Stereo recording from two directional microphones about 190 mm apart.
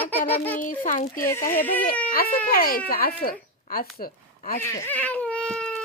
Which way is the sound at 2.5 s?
50° left (ahead or behind).